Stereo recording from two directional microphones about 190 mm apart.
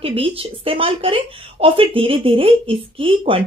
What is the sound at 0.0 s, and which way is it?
A woman's voice, 30° right (ahead or behind).